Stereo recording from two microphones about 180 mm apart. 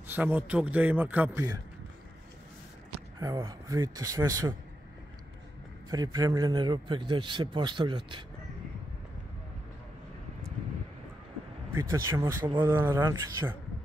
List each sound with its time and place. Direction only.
0.0 s a sound: 10° right (ahead or behind)
0.5 s speech: 10° right (ahead or behind)
3.2 s a man's voice: 20° right (ahead or behind)
5.9 s a man's voice: 20° right (ahead or behind)
11.7 s speech: 15° right (ahead or behind)